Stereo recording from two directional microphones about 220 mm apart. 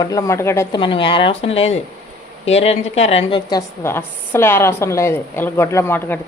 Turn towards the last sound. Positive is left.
turn(degrees=10)  # may be behind; listen again after turning